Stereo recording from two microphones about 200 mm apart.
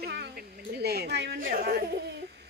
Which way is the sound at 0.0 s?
55° right (ahead or behind).